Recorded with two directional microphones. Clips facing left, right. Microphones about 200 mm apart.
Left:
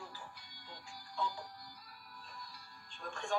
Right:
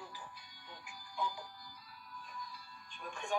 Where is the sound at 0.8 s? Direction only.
15° right (ahead or behind).